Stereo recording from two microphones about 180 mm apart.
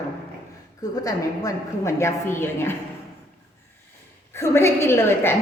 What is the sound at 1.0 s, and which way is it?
A woman's voice, 15° left (ahead or behind).